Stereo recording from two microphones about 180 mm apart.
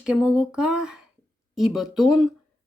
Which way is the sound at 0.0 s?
5° right (ahead or behind).